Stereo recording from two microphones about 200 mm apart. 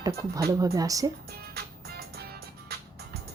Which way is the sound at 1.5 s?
50° right (ahead or behind).